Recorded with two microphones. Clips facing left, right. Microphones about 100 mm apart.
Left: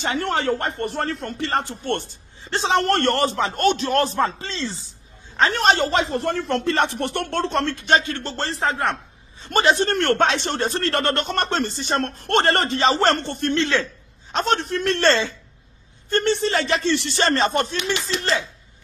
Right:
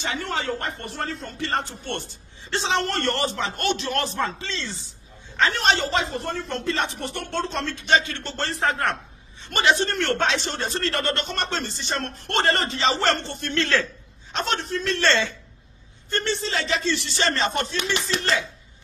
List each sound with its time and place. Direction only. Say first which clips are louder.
0.0 s a man's voice: left 5 dB; 55° left (ahead or behind)
6.1 s speech: left 6 dB; 75° left (ahead or behind)
7.9 s speech: left 1 dB; 40° left (ahead or behind)
9.5 s a man's voice: left 3 dB; 45° left (ahead or behind)
13.6 s a man's voice: even; 20° left (ahead or behind)
14.3 s a man's voice: left 5 dB; 50° left (ahead or behind)
15.0 s speech: left 3 dB; 30° left (ahead or behind)
16.1 s a man's voice: left 6 dB; 50° left (ahead or behind)
17.9 s speech: even; 40° right (ahead or behind)